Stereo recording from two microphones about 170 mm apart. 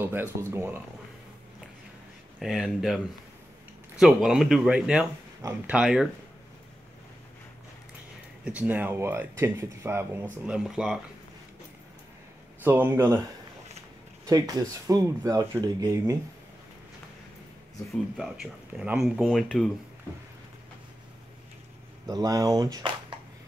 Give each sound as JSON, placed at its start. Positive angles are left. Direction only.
{"t": 0.0, "sound": "speech", "side_deg": -10}
{"t": 2.4, "sound": "speech", "side_deg": 0}
{"t": 4.0, "sound": "speech", "side_deg": 0}
{"t": 8.5, "sound": "speech", "side_deg": -10}
{"t": 12.6, "sound": "speech", "side_deg": -15}
{"t": 14.2, "sound": "speech", "side_deg": -20}
{"t": 18.1, "sound": "speech", "side_deg": 0}
{"t": 22.0, "sound": "speech", "side_deg": -20}